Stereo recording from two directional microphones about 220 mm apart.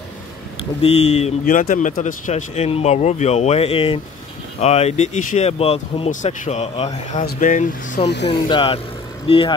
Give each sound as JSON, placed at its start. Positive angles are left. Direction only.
{"t": 0.8, "sound": "a man's voice", "side_deg": 30}
{"t": 8.0, "sound": "speech", "side_deg": 50}
{"t": 8.3, "sound": "a man's voice", "side_deg": 25}